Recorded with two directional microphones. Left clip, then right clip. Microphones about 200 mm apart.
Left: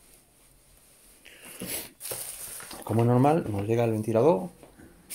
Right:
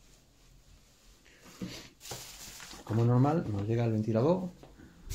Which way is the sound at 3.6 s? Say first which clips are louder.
Left 7 dB; 30° left (ahead or behind).